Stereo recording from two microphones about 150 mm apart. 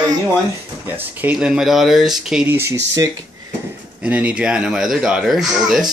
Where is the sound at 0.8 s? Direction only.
10° right (ahead or behind).